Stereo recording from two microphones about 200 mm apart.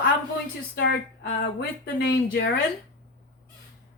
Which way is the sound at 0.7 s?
55° left (ahead or behind).